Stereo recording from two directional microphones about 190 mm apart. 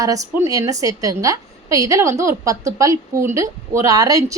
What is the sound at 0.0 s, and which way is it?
A woman's voice, 15° right (ahead or behind).